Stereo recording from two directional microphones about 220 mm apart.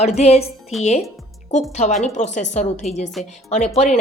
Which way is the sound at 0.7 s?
Centre (ahead or behind).